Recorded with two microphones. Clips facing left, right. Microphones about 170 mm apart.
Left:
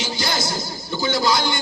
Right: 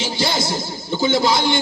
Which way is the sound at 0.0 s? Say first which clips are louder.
Right 3 dB; 25° right (ahead or behind).